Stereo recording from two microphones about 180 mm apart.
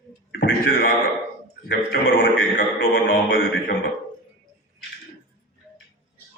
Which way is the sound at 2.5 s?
55° left (ahead or behind).